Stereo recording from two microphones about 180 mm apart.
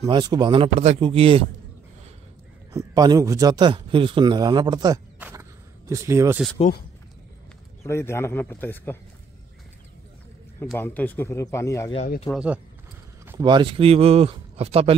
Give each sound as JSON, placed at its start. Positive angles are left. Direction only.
{"t": 0.0, "sound": "speech", "side_deg": -25}
{"t": 2.7, "sound": "speech", "side_deg": -20}
{"t": 5.2, "sound": "a sound", "side_deg": -15}
{"t": 7.8, "sound": "speech", "side_deg": 15}
{"t": 10.6, "sound": "speech", "side_deg": 10}
{"t": 12.3, "sound": "speech", "side_deg": -5}
{"t": 13.4, "sound": "speech", "side_deg": -25}